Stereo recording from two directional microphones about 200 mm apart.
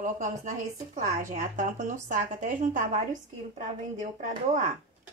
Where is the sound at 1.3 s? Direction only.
35° right (ahead or behind).